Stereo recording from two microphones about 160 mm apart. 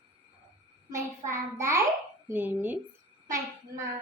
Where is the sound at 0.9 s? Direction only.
20° right (ahead or behind).